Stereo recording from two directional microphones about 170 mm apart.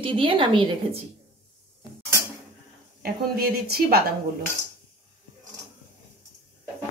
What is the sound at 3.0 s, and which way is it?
A woman's voice, 65° right (ahead or behind).